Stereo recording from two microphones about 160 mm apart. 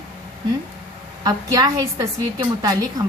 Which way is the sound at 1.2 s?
25° right (ahead or behind).